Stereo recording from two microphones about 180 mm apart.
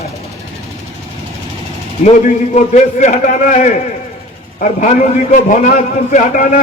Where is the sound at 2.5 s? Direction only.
40° left (ahead or behind).